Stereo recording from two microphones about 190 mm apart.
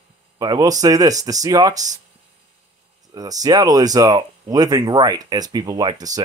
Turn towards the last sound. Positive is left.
turn(degrees=-20)  # may be behind; listen again after turning